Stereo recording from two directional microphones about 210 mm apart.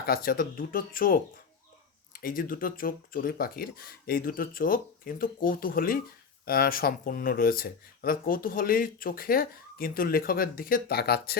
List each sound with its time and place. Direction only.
0.0 s speech: 45° left (ahead or behind)